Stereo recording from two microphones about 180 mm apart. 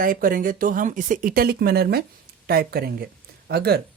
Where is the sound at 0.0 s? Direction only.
50° right (ahead or behind).